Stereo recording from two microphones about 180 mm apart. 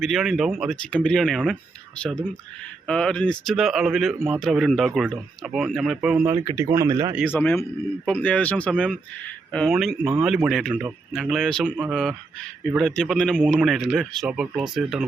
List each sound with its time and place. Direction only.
0.0 s a man's voice: centre (ahead or behind)
2.8 s a man's voice: 5° left (ahead or behind)
6.3 s speech: 20° right (ahead or behind)
7.3 s a man's voice: 15° left (ahead or behind); by 14.6 s 5° right (ahead or behind)